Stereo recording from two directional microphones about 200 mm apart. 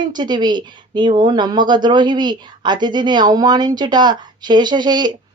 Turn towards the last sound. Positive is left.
turn(degrees=-20)  # may be behind; listen again after turning